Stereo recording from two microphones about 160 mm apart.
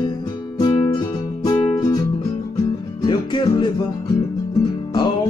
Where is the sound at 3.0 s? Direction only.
30° left (ahead or behind).